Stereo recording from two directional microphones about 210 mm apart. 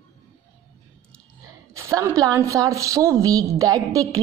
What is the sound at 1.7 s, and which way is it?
A woman's voice, 15° right (ahead or behind).